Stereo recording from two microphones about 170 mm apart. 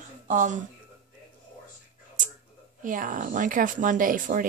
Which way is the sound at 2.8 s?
50° right (ahead or behind).